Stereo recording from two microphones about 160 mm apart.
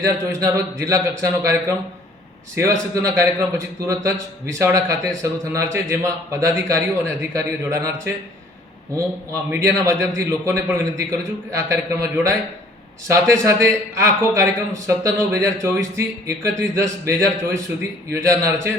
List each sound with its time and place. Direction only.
0.0 s a man's voice: 20° right (ahead or behind)
9.3 s a man's voice: 20° right (ahead or behind)